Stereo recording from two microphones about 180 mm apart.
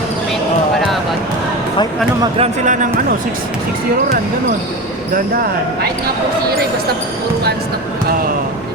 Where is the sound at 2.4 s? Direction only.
40° right (ahead or behind).